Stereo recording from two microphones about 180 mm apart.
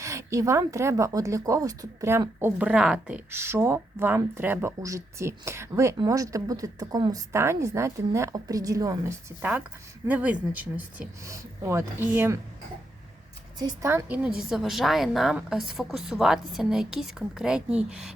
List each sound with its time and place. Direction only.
0.0 s speech: 15° right (ahead or behind)
13.6 s a woman's voice: 15° right (ahead or behind)